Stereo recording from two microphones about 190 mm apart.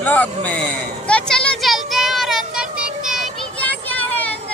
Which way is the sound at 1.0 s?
5° left (ahead or behind).